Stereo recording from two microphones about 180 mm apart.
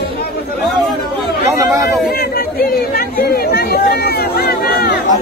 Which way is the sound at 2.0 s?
55° left (ahead or behind).